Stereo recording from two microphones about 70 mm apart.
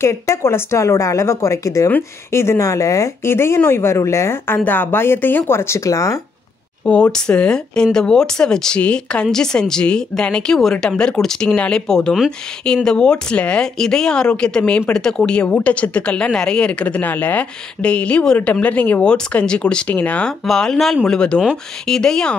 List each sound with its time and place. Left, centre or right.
0.0 s a woman's voice: left
3.3 s a woman's voice: left
5.9 s a woman's voice: left
6.8 s speech: centre
19.0 s speech: centre
20.2 s speech: centre
21.1 s speech: centre